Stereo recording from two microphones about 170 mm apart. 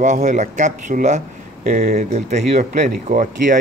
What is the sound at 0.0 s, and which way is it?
Speech, 45° right (ahead or behind).